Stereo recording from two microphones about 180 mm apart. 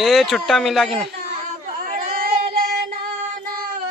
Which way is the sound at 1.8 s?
50° right (ahead or behind).